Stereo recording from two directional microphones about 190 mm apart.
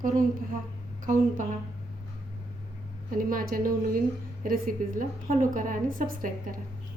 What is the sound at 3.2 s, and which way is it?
A woman's voice, 50° right (ahead or behind).